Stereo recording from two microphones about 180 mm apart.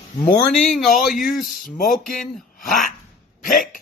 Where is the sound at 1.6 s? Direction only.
50° left (ahead or behind).